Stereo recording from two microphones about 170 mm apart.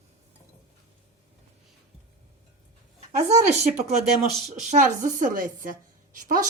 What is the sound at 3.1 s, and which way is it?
A woman's voice, 40° right (ahead or behind).